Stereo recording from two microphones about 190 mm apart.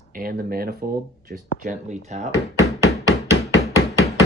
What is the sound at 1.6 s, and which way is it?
Speech, 40° right (ahead or behind).